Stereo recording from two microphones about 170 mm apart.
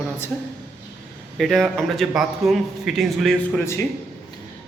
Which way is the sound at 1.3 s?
Centre (ahead or behind).